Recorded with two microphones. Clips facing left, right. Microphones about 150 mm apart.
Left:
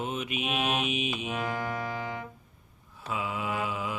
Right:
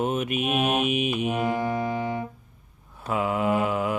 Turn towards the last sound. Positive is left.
turn(degrees=-55)  # may be behind; listen again after turning